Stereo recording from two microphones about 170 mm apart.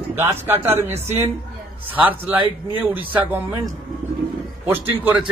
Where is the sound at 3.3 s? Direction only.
20° right (ahead or behind).